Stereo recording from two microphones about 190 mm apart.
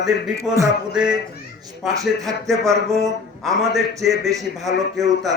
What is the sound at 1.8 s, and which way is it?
Speech, centre (ahead or behind).